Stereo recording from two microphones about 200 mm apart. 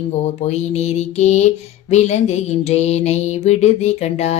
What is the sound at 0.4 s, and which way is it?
Music, 35° left (ahead or behind).